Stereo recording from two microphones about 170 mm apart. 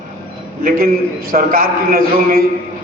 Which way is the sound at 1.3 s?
55° right (ahead or behind).